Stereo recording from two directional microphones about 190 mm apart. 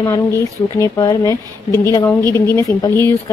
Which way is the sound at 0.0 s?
15° left (ahead or behind).